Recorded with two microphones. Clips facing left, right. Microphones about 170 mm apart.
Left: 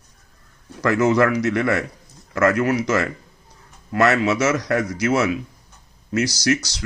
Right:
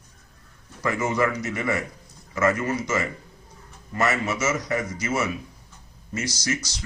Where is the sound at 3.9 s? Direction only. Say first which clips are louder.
Left 7 dB; 80° left.